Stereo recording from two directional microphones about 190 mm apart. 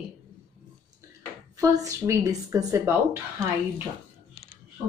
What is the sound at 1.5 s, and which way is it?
Speech, 15° right (ahead or behind).